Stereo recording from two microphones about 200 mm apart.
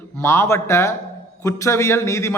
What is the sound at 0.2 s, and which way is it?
A man's voice, 15° left (ahead or behind).